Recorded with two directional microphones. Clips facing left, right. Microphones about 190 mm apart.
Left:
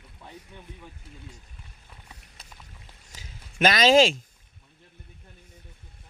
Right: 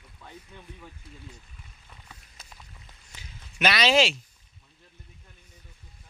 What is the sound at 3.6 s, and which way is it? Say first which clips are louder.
Speech: left 4 dB; 45° left (ahead or behind).